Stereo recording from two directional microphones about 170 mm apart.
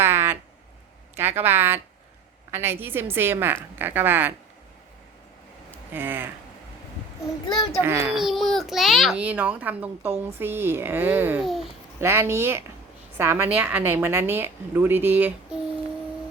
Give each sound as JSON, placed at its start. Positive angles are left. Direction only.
{"t": 0.0, "sound": "a sound", "side_deg": -15}
{"t": 2.5, "sound": "a child's voice", "side_deg": -15}
{"t": 5.9, "sound": "a child's voice", "side_deg": -10}
{"t": 7.4, "sound": "a child's voice", "side_deg": 25}
{"t": 7.9, "sound": "a child's voice", "side_deg": -15}
{"t": 8.1, "sound": "a child's voice", "side_deg": 0}
{"t": 11.4, "sound": "speech", "side_deg": 0}
{"t": 11.9, "sound": "a child's voice", "side_deg": -15}